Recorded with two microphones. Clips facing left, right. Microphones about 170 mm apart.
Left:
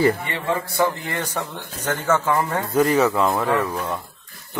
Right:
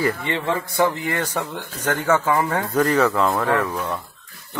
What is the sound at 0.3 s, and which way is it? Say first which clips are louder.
A man's voice: right 1 dB; 15° right (ahead or behind).